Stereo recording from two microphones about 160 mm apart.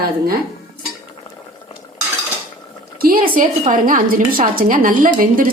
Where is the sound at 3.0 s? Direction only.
65° right (ahead or behind).